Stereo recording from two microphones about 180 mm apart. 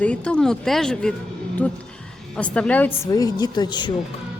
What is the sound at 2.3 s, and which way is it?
Speech, 5° left (ahead or behind).